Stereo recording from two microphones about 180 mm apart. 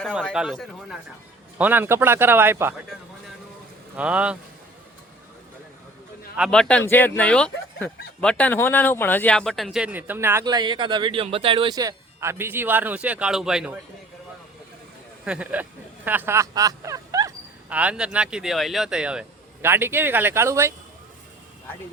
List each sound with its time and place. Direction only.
0.3 s speech: centre (ahead or behind)
3.9 s speech: 5° right (ahead or behind)
6.5 s a man's voice: 5° left (ahead or behind)
15.2 s speech: 5° right (ahead or behind)
17.7 s speech: 5° right (ahead or behind)